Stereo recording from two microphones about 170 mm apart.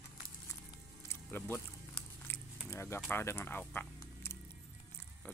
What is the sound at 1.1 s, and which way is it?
Music, 10° left (ahead or behind).